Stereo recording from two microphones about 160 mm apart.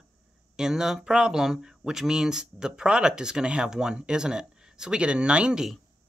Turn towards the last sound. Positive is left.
turn(degrees=-5)  # may be behind; listen again after turning